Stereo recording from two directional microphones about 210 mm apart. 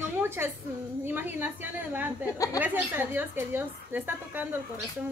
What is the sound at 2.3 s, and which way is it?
Speech, 15° left (ahead or behind).